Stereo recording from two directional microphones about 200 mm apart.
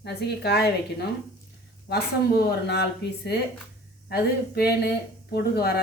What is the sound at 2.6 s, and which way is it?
Speech, 55° left (ahead or behind).